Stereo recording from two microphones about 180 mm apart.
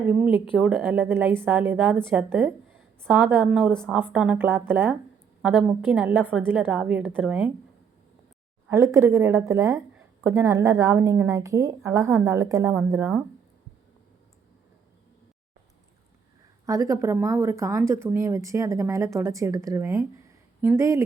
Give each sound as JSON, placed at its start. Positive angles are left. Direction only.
{"t": 0.1, "sound": "speech", "side_deg": -10}
{"t": 0.8, "sound": "speech", "side_deg": -10}
{"t": 3.4, "sound": "speech", "side_deg": 0}
{"t": 8.7, "sound": "speech", "side_deg": -15}
{"t": 16.6, "sound": "speech", "side_deg": -20}